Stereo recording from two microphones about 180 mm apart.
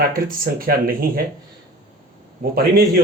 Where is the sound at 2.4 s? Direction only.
60° right (ahead or behind).